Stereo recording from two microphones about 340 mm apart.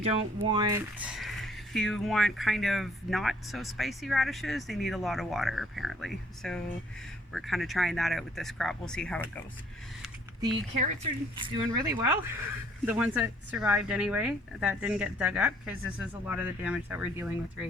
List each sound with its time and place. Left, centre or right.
0.0 s speech: centre
10.4 s speech: centre